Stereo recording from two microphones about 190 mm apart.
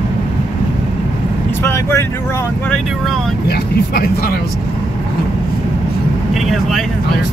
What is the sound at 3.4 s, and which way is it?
Speech, 55° left (ahead or behind).